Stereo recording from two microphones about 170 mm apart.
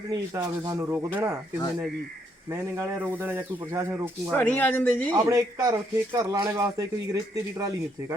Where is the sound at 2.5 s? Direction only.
20° right (ahead or behind).